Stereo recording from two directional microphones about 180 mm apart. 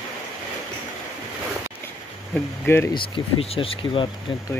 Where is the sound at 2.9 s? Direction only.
30° left (ahead or behind).